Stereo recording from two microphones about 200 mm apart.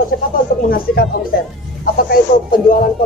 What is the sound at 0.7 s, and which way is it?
Speech, 50° left (ahead or behind).